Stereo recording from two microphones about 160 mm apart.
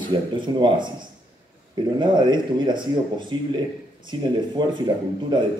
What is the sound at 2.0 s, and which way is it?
Speech, 25° right (ahead or behind).